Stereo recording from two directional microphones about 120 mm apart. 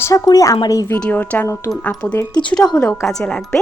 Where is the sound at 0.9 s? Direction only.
10° left (ahead or behind).